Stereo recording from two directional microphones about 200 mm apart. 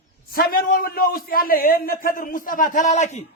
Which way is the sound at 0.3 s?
50° left (ahead or behind).